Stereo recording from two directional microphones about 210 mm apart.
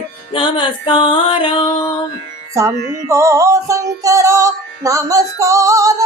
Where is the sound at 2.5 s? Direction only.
15° right (ahead or behind).